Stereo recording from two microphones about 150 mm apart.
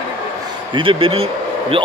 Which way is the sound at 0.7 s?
35° right (ahead or behind).